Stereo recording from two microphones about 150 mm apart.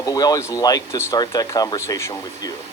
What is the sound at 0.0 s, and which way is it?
Speech, 25° left (ahead or behind).